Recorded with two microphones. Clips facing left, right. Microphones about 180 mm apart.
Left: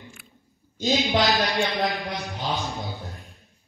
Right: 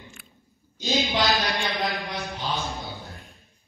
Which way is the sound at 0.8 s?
Centre (ahead or behind).